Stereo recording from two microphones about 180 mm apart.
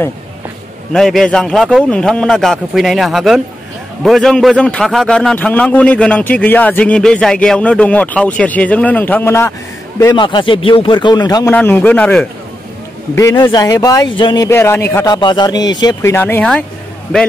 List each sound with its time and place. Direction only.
0.9 s a man's voice: centre (ahead or behind); by 11.5 s 20° left (ahead or behind)
11.5 s a man's voice: 10° left (ahead or behind)
13.1 s a man's voice: 15° left (ahead or behind)
15.1 s a man's voice: 25° left (ahead or behind); by 16.6 s 10° left (ahead or behind)